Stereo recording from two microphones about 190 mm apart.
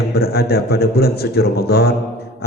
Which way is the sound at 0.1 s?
55° left (ahead or behind).